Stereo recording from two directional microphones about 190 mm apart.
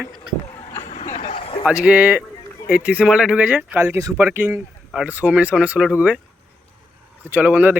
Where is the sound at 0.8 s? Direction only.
35° left (ahead or behind).